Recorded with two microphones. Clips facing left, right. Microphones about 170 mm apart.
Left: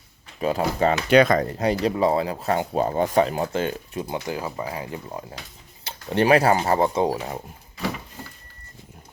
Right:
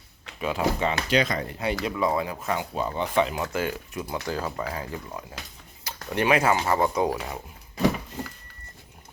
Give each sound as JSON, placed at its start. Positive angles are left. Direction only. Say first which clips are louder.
{"t": 0.3, "sound": "speech", "louder": "left 3 dB", "side_deg": 40}
{"t": 1.1, "sound": "speech", "louder": "left 9 dB", "side_deg": 55}
{"t": 1.5, "sound": "speech", "louder": "left 6 dB", "side_deg": 40}
{"t": 6.1, "sound": "speech", "louder": "left 4 dB", "side_deg": 35}